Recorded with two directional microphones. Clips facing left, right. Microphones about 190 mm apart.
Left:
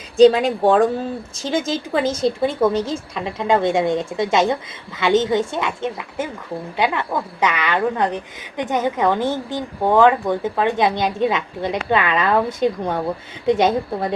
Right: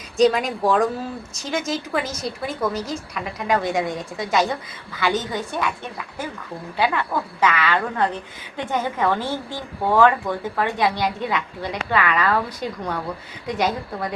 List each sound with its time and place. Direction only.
0.2 s a woman's voice: 30° left (ahead or behind)